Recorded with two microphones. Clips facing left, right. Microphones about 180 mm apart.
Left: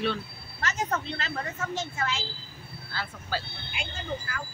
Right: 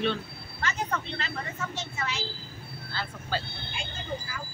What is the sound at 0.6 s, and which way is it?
A woman's voice, 45° left (ahead or behind).